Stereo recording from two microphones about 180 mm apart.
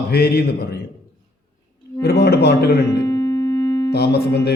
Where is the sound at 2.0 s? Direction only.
65° left (ahead or behind).